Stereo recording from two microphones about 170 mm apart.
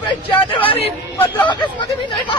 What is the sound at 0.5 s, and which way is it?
Speech, 30° left (ahead or behind).